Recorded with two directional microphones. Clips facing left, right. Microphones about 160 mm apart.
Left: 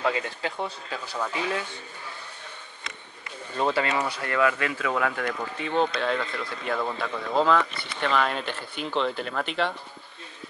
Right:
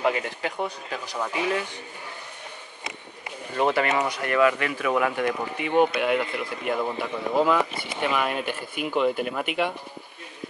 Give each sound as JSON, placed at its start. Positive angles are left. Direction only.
{"t": 0.0, "sound": "speech", "side_deg": -15}
{"t": 3.9, "sound": "speech", "side_deg": -20}